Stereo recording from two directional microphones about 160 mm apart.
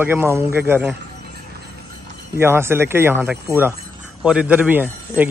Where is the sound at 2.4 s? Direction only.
15° right (ahead or behind).